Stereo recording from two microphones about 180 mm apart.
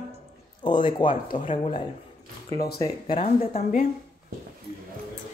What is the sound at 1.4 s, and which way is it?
Speech, 45° left (ahead or behind).